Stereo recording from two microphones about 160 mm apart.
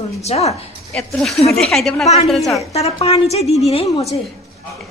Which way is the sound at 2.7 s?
40° left (ahead or behind).